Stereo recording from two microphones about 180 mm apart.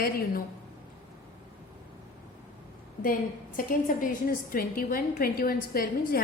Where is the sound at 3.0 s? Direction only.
50° left (ahead or behind).